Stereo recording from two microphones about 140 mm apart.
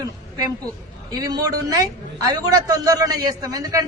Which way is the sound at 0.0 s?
25° right (ahead or behind).